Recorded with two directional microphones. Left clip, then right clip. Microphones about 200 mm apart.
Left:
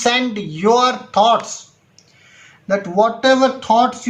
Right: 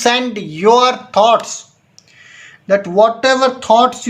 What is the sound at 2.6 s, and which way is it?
Speech, 40° right (ahead or behind).